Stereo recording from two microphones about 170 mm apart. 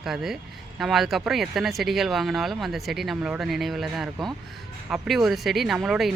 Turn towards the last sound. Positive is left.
turn(degrees=0)  # may be behind; listen again after turning